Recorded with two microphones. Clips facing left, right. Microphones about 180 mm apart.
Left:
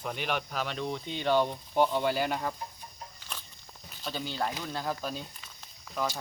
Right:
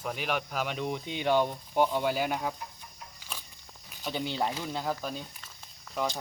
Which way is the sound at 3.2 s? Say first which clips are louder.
Right 2 dB; 10° right (ahead or behind).